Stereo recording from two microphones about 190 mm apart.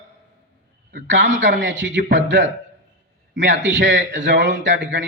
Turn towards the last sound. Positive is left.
turn(degrees=-70)  # may be behind; listen again after turning